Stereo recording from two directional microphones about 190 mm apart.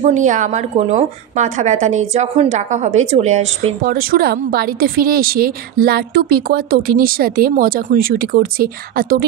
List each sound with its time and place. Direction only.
0.0 s a woman's voice: 40° right (ahead or behind)
3.8 s a woman's voice: 50° right (ahead or behind)